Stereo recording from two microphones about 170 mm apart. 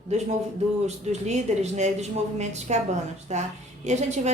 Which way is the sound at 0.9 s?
40° right (ahead or behind).